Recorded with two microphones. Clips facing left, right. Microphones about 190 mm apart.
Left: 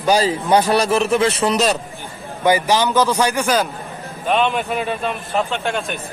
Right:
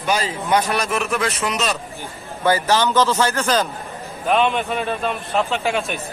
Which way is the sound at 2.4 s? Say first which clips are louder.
Left 2 dB; 15° left (ahead or behind).